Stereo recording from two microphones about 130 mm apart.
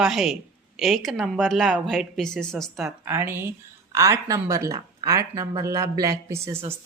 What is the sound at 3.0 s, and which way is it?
Speech, 15° right (ahead or behind).